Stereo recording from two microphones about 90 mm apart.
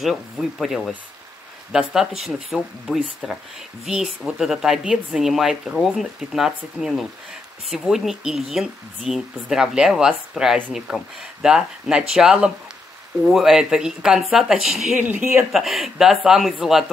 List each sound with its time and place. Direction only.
0.0 s speech: centre (ahead or behind)
15.0 s speech: 20° right (ahead or behind)
15.5 s speech: centre (ahead or behind)